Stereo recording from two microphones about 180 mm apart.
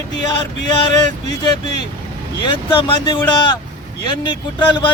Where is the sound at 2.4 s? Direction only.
25° left (ahead or behind).